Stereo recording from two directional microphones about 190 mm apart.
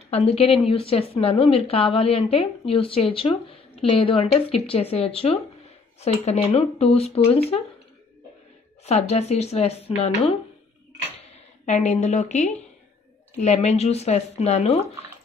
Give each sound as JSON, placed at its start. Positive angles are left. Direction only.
{"t": 0.1, "sound": "a woman's voice", "side_deg": 30}
{"t": 8.8, "sound": "a woman's voice", "side_deg": 35}
{"t": 11.6, "sound": "a woman's voice", "side_deg": 35}